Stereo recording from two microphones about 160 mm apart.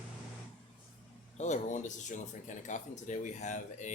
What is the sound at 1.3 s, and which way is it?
Speech, 45° left (ahead or behind).